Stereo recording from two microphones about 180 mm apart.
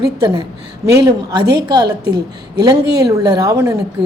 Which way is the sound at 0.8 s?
25° right (ahead or behind).